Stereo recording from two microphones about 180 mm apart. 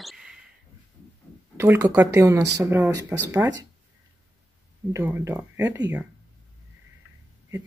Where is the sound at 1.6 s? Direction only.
15° right (ahead or behind).